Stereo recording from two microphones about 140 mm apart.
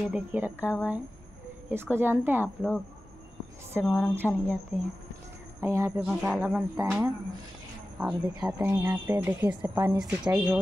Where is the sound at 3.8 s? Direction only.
10° left (ahead or behind).